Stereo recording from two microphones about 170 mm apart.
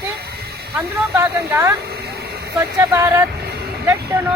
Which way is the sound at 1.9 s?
70° right (ahead or behind).